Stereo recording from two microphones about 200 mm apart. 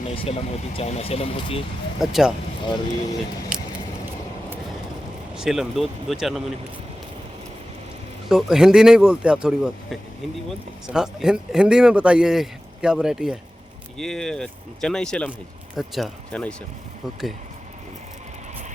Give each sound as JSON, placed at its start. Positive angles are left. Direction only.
{"t": 0.3, "sound": "speech", "side_deg": 30}
{"t": 2.0, "sound": "speech", "side_deg": 0}
{"t": 2.6, "sound": "speech", "side_deg": 20}
{"t": 5.4, "sound": "speech", "side_deg": 0}
{"t": 8.3, "sound": "speech", "side_deg": 0}